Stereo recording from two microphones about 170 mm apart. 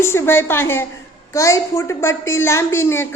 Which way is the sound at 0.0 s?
15° left (ahead or behind).